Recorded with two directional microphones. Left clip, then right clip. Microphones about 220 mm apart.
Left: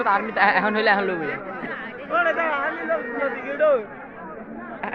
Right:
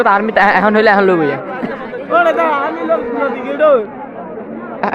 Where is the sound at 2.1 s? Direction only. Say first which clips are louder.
Right 10 dB; 60° right (ahead or behind).